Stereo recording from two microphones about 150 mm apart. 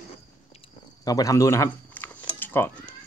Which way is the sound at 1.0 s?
25° left (ahead or behind).